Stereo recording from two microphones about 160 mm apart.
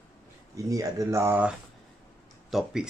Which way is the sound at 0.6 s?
20° right (ahead or behind).